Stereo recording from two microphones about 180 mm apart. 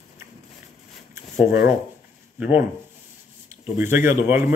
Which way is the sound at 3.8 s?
15° right (ahead or behind).